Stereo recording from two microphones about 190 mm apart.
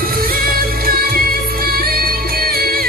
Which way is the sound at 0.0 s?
50° right (ahead or behind).